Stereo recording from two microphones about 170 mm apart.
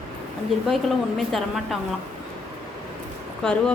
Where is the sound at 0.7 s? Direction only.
Centre (ahead or behind).